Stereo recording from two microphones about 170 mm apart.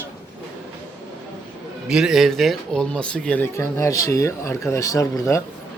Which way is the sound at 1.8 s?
5° right (ahead or behind).